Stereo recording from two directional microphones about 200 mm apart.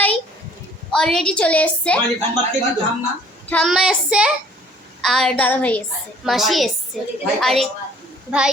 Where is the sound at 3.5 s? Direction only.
Centre (ahead or behind).